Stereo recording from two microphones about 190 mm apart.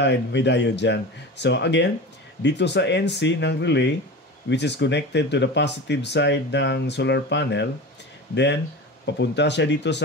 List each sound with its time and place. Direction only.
0.0 s speech: 65° left (ahead or behind)
9.0 s speech: 65° left (ahead or behind)